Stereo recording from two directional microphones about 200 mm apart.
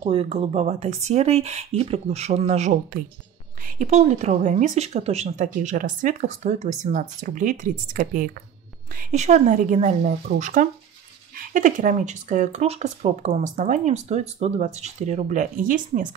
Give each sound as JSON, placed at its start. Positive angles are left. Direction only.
{"t": 0.0, "sound": "a woman's voice", "side_deg": -25}